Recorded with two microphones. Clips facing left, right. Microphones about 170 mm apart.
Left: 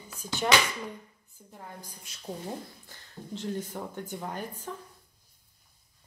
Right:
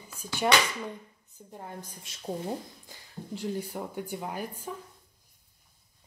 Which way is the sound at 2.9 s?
10° right (ahead or behind).